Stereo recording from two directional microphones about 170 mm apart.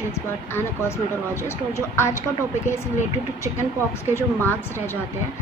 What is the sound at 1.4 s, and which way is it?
Speech, 15° left (ahead or behind).